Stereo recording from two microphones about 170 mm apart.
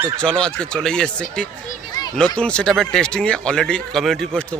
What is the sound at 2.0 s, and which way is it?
Children playing, 20° left (ahead or behind).